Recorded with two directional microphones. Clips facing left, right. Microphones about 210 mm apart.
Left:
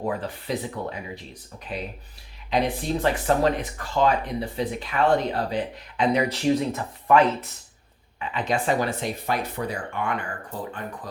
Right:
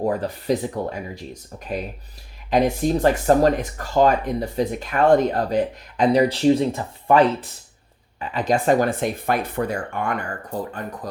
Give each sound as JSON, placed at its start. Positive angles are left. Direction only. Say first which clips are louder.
{"t": 0.0, "sound": "speech", "louder": "right 5 dB", "side_deg": -40}